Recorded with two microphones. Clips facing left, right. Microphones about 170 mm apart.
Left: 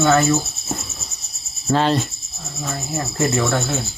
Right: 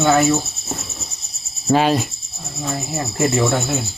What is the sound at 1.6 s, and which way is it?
Speech, 10° right (ahead or behind).